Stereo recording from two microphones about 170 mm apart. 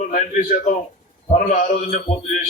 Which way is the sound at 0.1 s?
50° left (ahead or behind).